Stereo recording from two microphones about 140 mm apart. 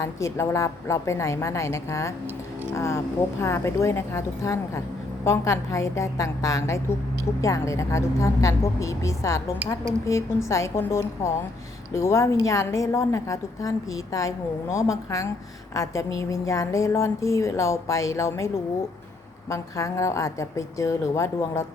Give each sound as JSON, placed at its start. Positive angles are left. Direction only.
{"t": 0.0, "sound": "a woman's voice", "side_deg": 20}